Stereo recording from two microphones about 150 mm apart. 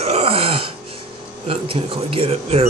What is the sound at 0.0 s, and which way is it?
Wail, 45° right (ahead or behind).